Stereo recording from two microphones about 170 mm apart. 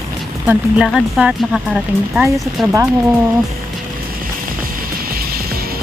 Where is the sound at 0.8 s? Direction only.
Centre (ahead or behind).